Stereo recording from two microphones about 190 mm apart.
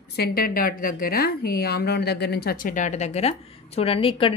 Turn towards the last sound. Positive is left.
turn(degrees=30)  # may be behind; listen again after turning